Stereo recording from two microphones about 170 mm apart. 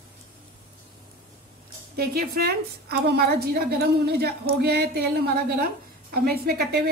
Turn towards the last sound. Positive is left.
turn(degrees=-70)  # may be behind; listen again after turning